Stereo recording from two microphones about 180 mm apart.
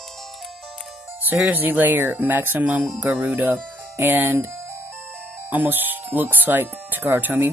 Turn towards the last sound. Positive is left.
turn(degrees=-10)  # may be behind; listen again after turning